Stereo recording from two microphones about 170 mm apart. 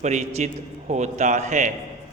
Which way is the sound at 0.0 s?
45° right (ahead or behind).